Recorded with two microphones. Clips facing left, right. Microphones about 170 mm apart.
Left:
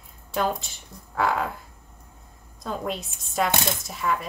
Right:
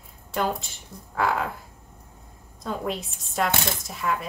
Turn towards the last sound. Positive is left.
turn(degrees=0)  # may be behind; listen again after turning